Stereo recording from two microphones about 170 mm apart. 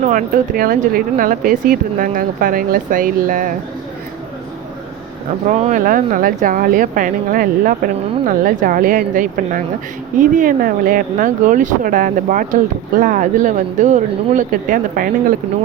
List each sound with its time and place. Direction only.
0.1 s speech: 55° right (ahead or behind)
5.5 s speech: 45° right (ahead or behind)